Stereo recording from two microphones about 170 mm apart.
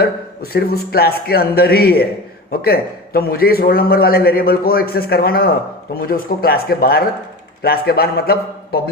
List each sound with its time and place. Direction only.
0.0 s a man's voice: 65° left (ahead or behind)